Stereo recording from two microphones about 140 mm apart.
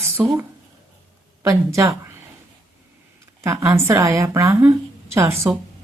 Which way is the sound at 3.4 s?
20° right (ahead or behind).